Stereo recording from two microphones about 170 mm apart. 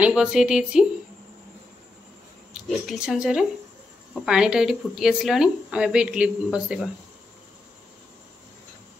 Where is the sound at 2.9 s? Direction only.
5° right (ahead or behind).